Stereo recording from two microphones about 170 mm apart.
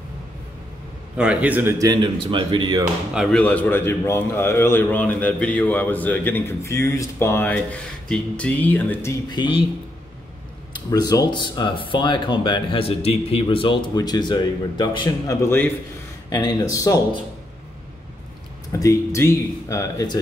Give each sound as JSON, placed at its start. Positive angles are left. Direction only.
{"t": 1.1, "sound": "a man's voice", "side_deg": -5}
{"t": 1.9, "sound": "speech", "side_deg": -30}
{"t": 3.2, "sound": "a man's voice", "side_deg": 5}
{"t": 9.3, "sound": "speech", "side_deg": 30}
{"t": 10.9, "sound": "speech", "side_deg": 20}
{"t": 18.7, "sound": "speech", "side_deg": 20}